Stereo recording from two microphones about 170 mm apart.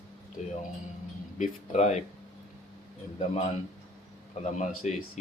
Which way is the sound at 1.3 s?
45° left (ahead or behind).